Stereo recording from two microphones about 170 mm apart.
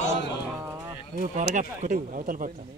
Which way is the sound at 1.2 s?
45° right (ahead or behind).